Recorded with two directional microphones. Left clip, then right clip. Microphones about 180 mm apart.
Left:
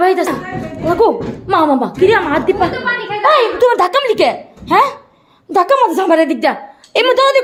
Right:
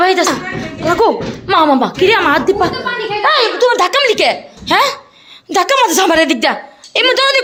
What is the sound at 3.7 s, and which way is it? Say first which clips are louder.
A woman's voice: right 1 dB; 10° left (ahead or behind).